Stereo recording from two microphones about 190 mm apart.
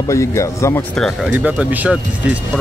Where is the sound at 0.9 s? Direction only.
Centre (ahead or behind).